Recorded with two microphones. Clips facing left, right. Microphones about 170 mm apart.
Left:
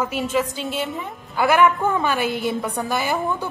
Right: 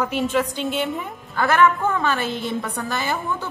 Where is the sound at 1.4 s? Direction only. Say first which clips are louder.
Left 1 dB; 10° left (ahead or behind).